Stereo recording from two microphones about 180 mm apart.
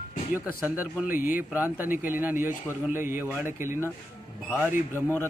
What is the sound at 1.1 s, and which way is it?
Speech, 50° left (ahead or behind).